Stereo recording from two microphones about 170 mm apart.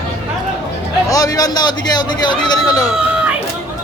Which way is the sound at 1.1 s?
20° left (ahead or behind).